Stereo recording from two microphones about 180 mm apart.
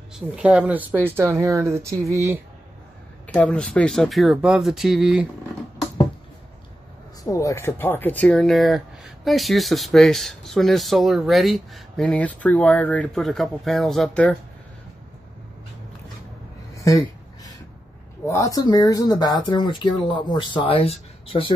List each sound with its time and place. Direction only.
0.1 s speech: 5° right (ahead or behind)
3.3 s speech: 5° left (ahead or behind)
7.2 s speech: 15° left (ahead or behind)
16.7 s a sound: 20° left (ahead or behind)
18.2 s speech: 15° left (ahead or behind)